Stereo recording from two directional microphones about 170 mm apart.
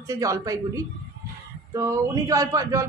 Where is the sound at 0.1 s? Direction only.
20° right (ahead or behind).